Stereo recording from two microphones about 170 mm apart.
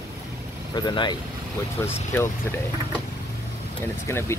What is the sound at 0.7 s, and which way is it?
Speech, 25° left (ahead or behind).